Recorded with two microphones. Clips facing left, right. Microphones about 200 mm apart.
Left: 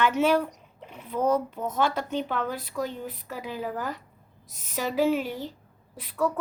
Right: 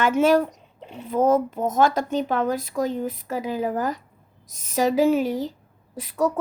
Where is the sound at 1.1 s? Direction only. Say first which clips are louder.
Right 5 dB; 45° right (ahead or behind).